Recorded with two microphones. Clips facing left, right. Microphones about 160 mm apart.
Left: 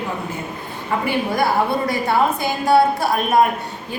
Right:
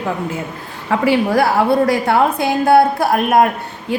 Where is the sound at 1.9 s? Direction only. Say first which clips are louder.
Right 4 dB; 65° right (ahead or behind).